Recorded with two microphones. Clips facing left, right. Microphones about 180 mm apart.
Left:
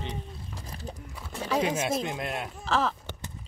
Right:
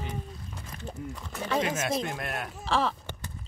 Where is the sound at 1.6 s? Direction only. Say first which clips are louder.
Left 1 dB; 20° left (ahead or behind).